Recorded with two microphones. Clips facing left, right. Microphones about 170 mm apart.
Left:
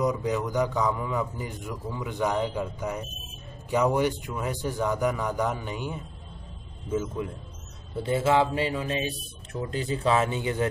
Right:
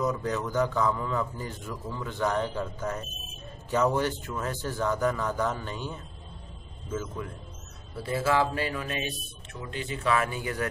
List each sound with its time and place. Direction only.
0.0 s a man's voice: 15° left (ahead or behind)